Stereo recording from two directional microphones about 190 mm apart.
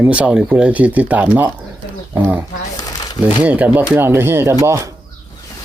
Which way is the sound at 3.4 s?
5° right (ahead or behind).